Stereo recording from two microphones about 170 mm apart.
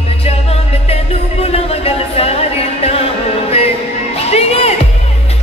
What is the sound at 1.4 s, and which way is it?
Music, 35° left (ahead or behind).